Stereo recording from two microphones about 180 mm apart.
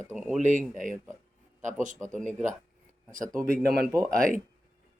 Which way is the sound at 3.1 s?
50° right (ahead or behind).